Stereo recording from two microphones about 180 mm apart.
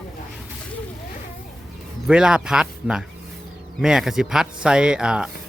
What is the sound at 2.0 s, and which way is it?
Speech, 5° right (ahead or behind).